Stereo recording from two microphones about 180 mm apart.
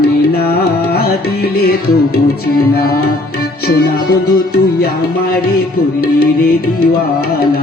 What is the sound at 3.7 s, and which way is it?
Music, 60° left (ahead or behind).